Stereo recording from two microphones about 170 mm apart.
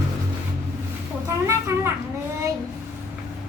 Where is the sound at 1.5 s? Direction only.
15° right (ahead or behind).